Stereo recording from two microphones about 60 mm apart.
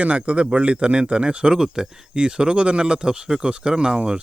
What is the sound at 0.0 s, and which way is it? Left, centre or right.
Speech, right.